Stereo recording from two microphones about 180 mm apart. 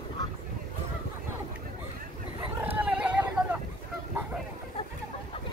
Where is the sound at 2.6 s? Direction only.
10° right (ahead or behind).